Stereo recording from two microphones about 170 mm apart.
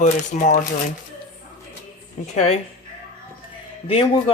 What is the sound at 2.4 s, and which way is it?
Speech, 40° left (ahead or behind).